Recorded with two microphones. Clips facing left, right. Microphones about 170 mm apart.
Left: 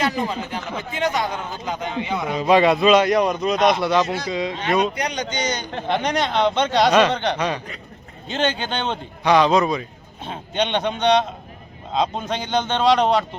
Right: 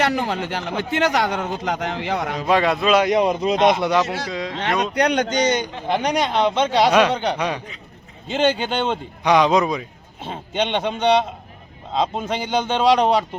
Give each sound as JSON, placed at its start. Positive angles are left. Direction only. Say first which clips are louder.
{"t": 0.0, "sound": "speech", "louder": "right 2 dB", "side_deg": -70}
{"t": 2.4, "sound": "speech", "louder": "left 4 dB", "side_deg": 0}
{"t": 3.0, "sound": "a man's voice", "louder": "right 1 dB", "side_deg": -20}
{"t": 4.3, "sound": "speech", "louder": "left 3 dB", "side_deg": 0}
{"t": 4.5, "sound": "speech", "louder": "right 2 dB", "side_deg": -70}
{"t": 5.5, "sound": "a man's voice", "louder": "right 6 dB", "side_deg": -20}
{"t": 5.9, "sound": "speech", "louder": "right 1 dB", "side_deg": -10}